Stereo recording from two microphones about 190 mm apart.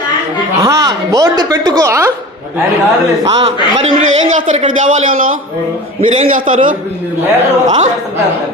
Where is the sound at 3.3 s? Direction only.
30° right (ahead or behind).